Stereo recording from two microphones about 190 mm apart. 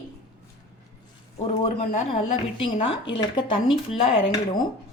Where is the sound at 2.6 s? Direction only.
30° left (ahead or behind).